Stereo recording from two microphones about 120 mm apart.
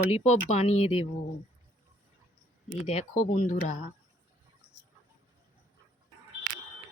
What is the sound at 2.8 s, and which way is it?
Speech, 80° left.